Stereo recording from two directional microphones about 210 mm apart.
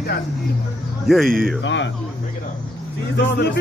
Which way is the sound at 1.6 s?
60° left (ahead or behind).